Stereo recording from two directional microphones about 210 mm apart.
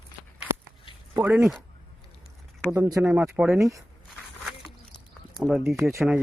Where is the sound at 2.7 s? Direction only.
15° right (ahead or behind).